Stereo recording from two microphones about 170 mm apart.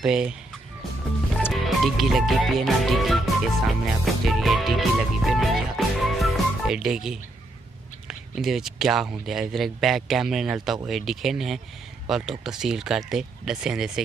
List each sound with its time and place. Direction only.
0.0 s speech: 5° right (ahead or behind)
1.5 s speech: centre (ahead or behind)